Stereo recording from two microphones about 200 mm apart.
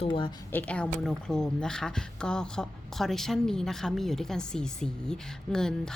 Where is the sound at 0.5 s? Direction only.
5° left (ahead or behind).